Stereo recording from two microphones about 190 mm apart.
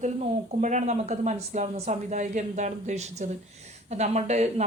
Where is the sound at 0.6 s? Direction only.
40° right (ahead or behind).